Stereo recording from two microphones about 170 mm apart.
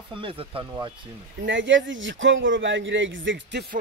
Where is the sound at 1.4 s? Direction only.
90° right.